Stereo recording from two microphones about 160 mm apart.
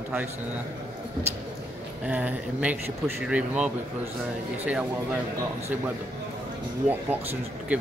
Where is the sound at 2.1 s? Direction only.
10° right (ahead or behind).